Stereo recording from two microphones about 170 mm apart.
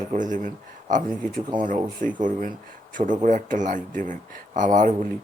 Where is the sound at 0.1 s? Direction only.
50° right (ahead or behind).